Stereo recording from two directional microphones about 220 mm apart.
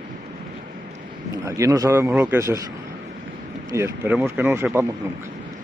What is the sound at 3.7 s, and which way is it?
A man's voice, 10° right (ahead or behind).